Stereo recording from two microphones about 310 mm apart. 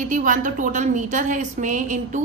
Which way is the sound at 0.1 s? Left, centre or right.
Right.